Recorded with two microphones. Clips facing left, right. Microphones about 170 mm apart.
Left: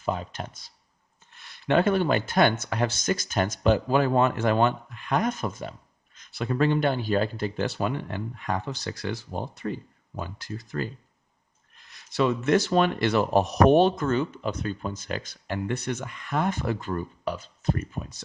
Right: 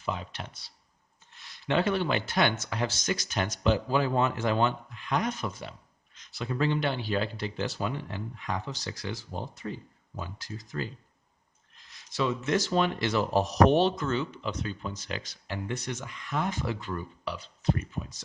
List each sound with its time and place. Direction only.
0.0 s speech: 45° left (ahead or behind)